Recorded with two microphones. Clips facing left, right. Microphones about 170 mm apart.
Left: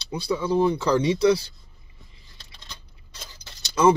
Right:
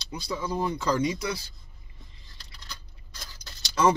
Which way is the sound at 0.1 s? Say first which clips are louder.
Left 8 dB; 30° left (ahead or behind).